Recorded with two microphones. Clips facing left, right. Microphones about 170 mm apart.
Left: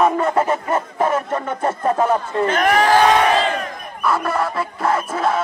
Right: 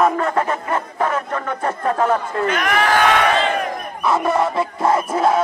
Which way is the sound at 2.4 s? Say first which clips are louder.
Left 5 dB; 35° left (ahead or behind).